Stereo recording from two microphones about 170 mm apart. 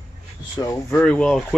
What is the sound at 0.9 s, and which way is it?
Speech, 5° left (ahead or behind).